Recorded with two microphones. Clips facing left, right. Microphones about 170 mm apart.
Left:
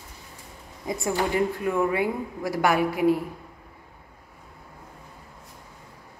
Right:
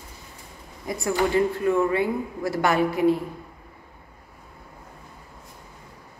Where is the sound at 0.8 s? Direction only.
25° left (ahead or behind).